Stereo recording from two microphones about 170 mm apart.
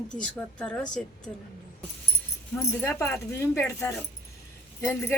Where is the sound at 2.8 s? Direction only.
15° left (ahead or behind).